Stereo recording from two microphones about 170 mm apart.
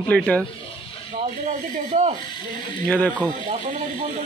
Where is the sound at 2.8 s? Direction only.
10° left (ahead or behind).